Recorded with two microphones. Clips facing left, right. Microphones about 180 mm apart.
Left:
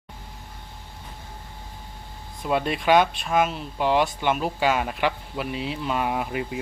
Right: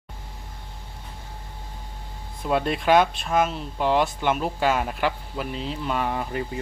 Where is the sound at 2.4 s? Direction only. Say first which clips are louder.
Right 1 dB; centre (ahead or behind).